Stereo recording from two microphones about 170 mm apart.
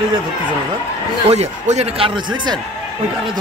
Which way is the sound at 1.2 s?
40° right (ahead or behind).